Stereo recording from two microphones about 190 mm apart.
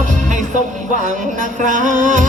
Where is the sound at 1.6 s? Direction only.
40° right (ahead or behind).